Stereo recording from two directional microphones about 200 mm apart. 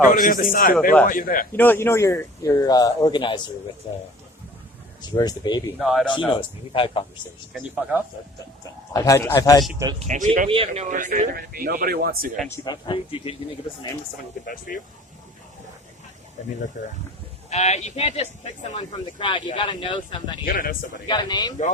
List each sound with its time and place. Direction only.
0.0 s a man's voice: 40° left (ahead or behind)
1.5 s speech: 10° left (ahead or behind)
5.0 s speech: 20° left (ahead or behind)
5.8 s speech: centre (ahead or behind)
6.3 s speech: 25° left (ahead or behind)
7.5 s speech: 5° right (ahead or behind)
8.9 s speech: 15° left (ahead or behind)
10.0 s speech: 35° right (ahead or behind)
10.5 s speech: 30° right (ahead or behind); by 12.3 s 50° right (ahead or behind)
12.5 s speech: 25° left (ahead or behind)
14.4 s a man's voice: 45° left (ahead or behind)
17.5 s speech: 35° left (ahead or behind)
20.4 s a man's voice: 45° left (ahead or behind)
21.1 s speech: 20° left (ahead or behind)